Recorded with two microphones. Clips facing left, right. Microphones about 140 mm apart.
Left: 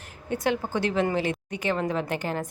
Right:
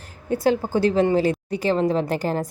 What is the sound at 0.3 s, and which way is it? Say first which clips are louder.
A woman's voice: right 6 dB; 35° right (ahead or behind).